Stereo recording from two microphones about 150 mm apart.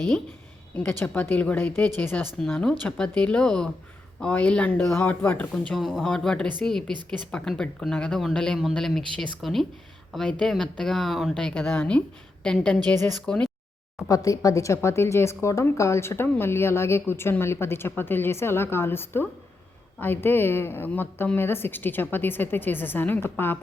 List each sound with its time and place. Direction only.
0.8 s a woman's voice: 10° left (ahead or behind)
14.1 s a woman's voice: 25° left (ahead or behind)